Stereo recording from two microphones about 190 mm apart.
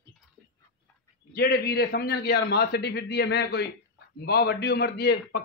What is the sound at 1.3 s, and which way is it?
A man's voice, 55° left (ahead or behind).